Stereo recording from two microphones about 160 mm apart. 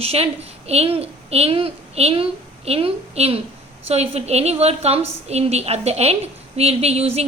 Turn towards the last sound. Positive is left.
turn(degrees=-40)  # may be behind; listen again after turning